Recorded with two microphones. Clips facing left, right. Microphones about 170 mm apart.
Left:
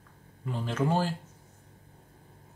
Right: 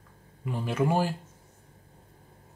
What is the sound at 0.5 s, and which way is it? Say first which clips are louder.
Speech: right 2 dB; 10° right (ahead or behind).